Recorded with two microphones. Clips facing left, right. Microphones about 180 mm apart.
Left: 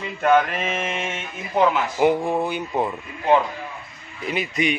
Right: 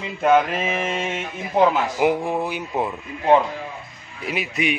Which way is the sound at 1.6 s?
5° right (ahead or behind).